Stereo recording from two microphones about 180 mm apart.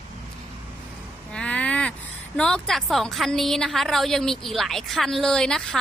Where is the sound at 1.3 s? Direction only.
5° left (ahead or behind).